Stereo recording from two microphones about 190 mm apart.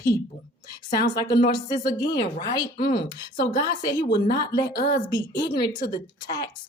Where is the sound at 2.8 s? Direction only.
50° left (ahead or behind).